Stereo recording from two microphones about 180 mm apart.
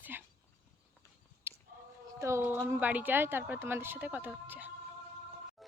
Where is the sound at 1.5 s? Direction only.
10° right (ahead or behind).